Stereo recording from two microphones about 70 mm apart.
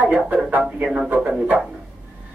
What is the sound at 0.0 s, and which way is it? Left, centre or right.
Speech, centre.